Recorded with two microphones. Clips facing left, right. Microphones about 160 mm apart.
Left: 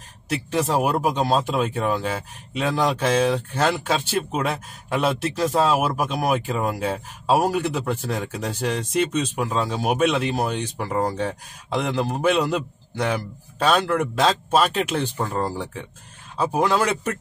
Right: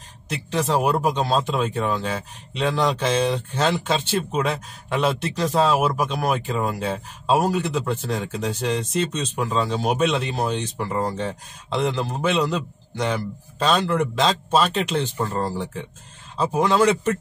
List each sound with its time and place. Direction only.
0.6 s speech: 10° left (ahead or behind)